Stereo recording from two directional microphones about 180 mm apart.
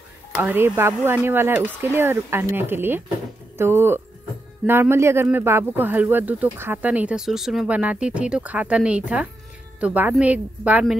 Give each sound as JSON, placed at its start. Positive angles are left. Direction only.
{"t": 0.4, "sound": "speech", "side_deg": -10}